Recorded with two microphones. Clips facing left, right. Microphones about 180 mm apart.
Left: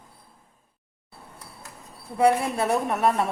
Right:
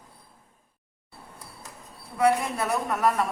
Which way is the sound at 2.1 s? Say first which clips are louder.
Left 2 dB; 30° left (ahead or behind).